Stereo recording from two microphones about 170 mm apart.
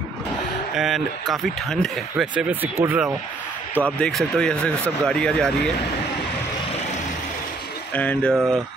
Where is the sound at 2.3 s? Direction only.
10° right (ahead or behind).